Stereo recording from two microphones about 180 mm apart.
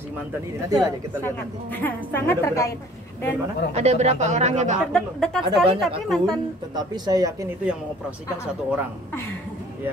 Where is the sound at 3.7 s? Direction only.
35° right (ahead or behind).